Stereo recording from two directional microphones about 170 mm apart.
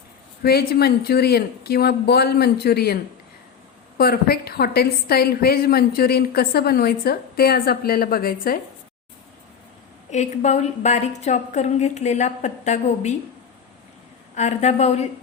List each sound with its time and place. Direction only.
0.4 s a woman's voice: 70° left (ahead or behind)
10.1 s a woman's voice: 45° left (ahead or behind)
14.3 s a woman's voice: 40° left (ahead or behind)